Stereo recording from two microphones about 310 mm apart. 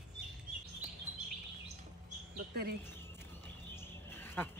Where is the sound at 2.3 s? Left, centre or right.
Right.